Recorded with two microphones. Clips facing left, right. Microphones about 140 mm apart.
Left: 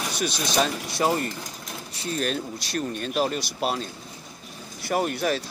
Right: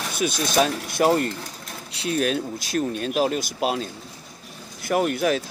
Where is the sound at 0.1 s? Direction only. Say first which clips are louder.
Right 6 dB; 50° right (ahead or behind).